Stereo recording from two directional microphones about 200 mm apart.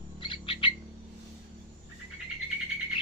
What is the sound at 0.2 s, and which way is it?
Bird, 25° left (ahead or behind).